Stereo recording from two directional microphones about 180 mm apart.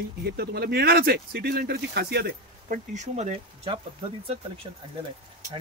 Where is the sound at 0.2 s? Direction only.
60° right (ahead or behind); by 3.8 s 35° right (ahead or behind).